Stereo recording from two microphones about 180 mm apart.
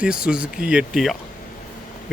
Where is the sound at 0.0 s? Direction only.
5° right (ahead or behind).